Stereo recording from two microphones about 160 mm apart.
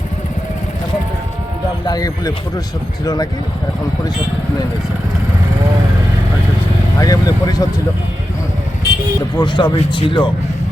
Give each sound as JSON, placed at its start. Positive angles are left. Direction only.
{"t": 1.8, "sound": "speech", "side_deg": 25}
{"t": 7.0, "sound": "speech", "side_deg": 25}
{"t": 9.3, "sound": "speech", "side_deg": 30}